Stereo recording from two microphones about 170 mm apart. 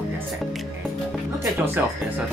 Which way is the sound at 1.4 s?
15° right (ahead or behind).